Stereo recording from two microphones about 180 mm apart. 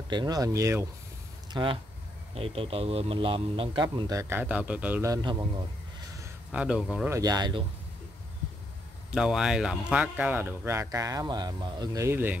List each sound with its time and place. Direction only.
0.1 s speech: 25° right (ahead or behind)
1.5 s a man's voice: 25° right (ahead or behind)
4.2 s speech: 10° right (ahead or behind)
5.1 s speech: 20° right (ahead or behind)
6.5 s speech: 5° right (ahead or behind)
7.1 s speech: 20° right (ahead or behind)
9.1 s speech: 5° right (ahead or behind)